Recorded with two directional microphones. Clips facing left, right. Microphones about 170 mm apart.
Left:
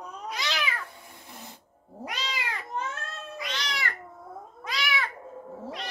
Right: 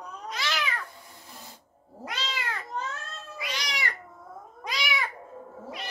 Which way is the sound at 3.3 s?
10° right (ahead or behind).